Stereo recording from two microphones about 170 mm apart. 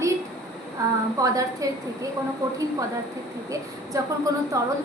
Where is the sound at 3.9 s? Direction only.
20° right (ahead or behind).